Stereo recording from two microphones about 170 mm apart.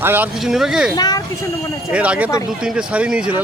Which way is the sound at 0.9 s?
20° left (ahead or behind).